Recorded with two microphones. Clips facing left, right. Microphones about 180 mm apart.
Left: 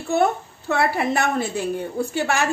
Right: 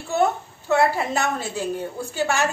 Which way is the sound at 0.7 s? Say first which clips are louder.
Right 1 dB; 60° left (ahead or behind).